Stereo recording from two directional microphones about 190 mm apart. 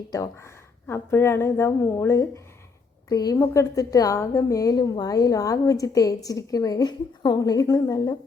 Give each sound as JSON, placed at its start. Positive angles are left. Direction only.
{"t": 0.1, "sound": "a woman's voice", "side_deg": 15}